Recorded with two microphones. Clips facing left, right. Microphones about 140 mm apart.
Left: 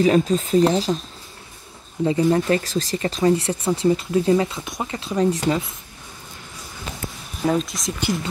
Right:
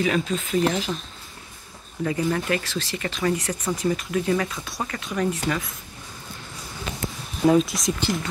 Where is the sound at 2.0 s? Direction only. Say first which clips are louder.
Left 6 dB; 30° left (ahead or behind).